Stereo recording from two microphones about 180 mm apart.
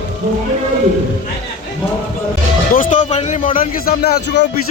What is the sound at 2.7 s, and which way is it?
Music, 45° left (ahead or behind).